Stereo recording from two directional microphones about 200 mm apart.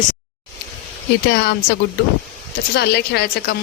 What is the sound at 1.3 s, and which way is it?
Speech, 55° left (ahead or behind).